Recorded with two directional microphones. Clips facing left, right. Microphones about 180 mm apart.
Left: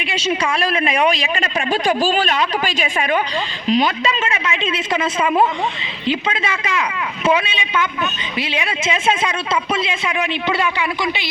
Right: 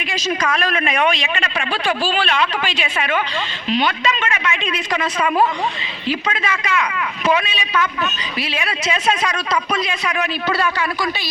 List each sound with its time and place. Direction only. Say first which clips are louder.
0.0 s a man's voice: left 1 dB; 30° left (ahead or behind)